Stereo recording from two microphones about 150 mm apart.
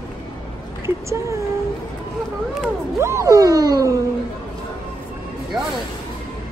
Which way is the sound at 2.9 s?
20° right (ahead or behind).